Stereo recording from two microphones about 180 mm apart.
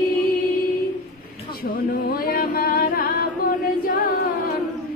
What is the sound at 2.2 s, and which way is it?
Music, 55° left (ahead or behind).